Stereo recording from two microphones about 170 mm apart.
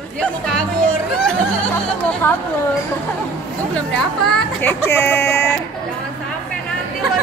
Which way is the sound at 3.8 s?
5° left (ahead or behind).